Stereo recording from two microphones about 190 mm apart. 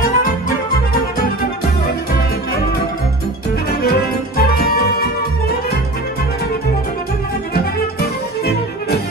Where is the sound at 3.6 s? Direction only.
55° left (ahead or behind).